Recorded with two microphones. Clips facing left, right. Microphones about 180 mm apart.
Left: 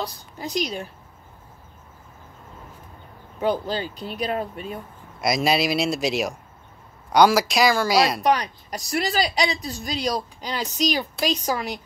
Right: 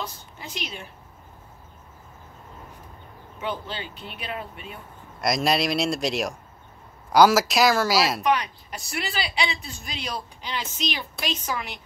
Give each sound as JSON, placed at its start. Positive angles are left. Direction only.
{"t": 0.0, "sound": "a woman's voice", "side_deg": 35}
{"t": 3.3, "sound": "a woman's voice", "side_deg": 40}
{"t": 5.2, "sound": "speech", "side_deg": 0}
{"t": 8.2, "sound": "a woman's voice", "side_deg": 35}